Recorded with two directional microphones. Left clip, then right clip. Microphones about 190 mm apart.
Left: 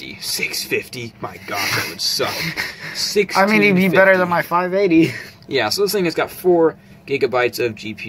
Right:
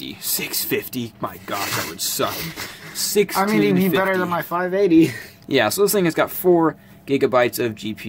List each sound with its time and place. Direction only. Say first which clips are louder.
0.0 s speech: left 4 dB; 50° right (ahead or behind)
2.3 s speech: left 7 dB; 5° left (ahead or behind)
4.8 s speech: left 1 dB; 10° right (ahead or behind)
5.5 s speech: even; 45° right (ahead or behind)